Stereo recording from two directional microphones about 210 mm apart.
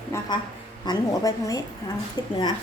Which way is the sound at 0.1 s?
10° left (ahead or behind).